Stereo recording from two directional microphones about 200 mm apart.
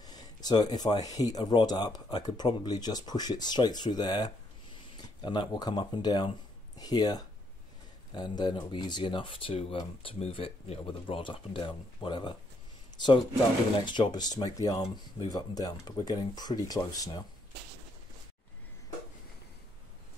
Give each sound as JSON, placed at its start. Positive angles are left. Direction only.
{"t": 0.0, "sound": "speech", "side_deg": 20}
{"t": 13.7, "sound": "speech", "side_deg": 20}